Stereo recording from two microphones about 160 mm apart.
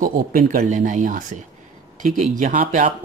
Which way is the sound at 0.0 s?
60° right (ahead or behind).